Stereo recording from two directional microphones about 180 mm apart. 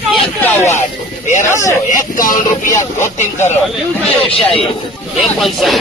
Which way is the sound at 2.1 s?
50° left (ahead or behind).